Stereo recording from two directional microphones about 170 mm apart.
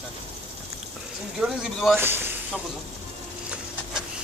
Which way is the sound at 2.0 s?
15° right (ahead or behind).